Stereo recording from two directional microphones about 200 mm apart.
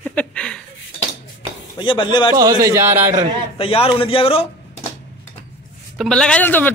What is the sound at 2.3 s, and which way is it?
Speech, 15° right (ahead or behind).